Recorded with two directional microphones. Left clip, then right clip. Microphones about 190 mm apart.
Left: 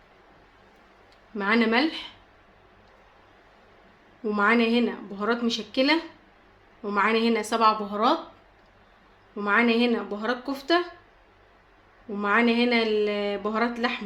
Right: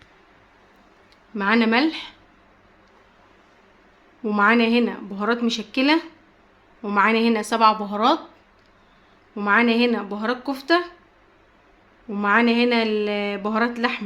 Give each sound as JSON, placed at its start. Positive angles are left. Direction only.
{"t": 1.4, "sound": "speech", "side_deg": -30}
{"t": 4.2, "sound": "speech", "side_deg": -35}
{"t": 9.3, "sound": "speech", "side_deg": -35}
{"t": 12.1, "sound": "speech", "side_deg": -35}